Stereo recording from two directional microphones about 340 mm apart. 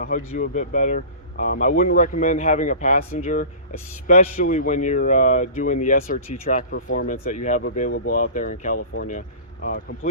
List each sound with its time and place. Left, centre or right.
0.3 s a man's voice: left